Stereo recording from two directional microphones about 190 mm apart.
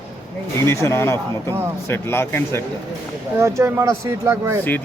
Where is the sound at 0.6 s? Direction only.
15° left (ahead or behind).